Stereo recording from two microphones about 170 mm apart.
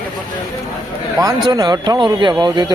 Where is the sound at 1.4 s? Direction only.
25° right (ahead or behind).